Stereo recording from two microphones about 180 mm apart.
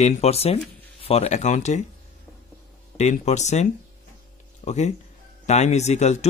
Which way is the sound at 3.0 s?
40° left (ahead or behind).